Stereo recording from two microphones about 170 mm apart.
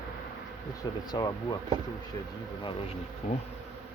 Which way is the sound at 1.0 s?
25° left (ahead or behind).